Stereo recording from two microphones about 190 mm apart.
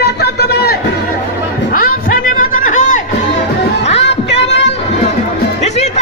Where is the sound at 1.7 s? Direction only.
45° left (ahead or behind).